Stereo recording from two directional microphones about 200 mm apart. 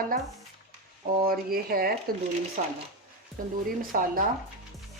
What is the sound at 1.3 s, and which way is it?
Speech, 50° right (ahead or behind).